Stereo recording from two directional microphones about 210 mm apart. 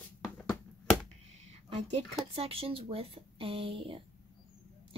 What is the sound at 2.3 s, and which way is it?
Speech, 25° right (ahead or behind).